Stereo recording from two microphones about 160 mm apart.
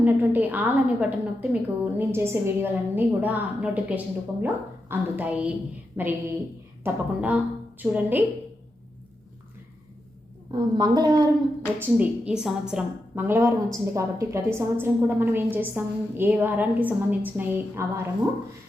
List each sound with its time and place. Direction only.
0.0 s a woman's voice: 10° right (ahead or behind)
10.8 s a woman's voice: 25° right (ahead or behind)
11.8 s a woman's voice: 10° right (ahead or behind)